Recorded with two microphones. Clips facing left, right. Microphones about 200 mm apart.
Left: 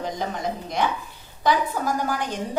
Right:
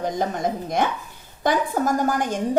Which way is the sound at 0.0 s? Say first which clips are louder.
Right 4 dB; 50° right (ahead or behind).